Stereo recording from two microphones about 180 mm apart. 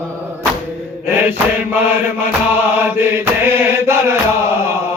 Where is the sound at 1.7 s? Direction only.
10° right (ahead or behind).